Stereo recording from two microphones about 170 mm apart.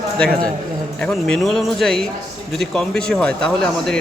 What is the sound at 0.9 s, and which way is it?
Speech, 5° left (ahead or behind).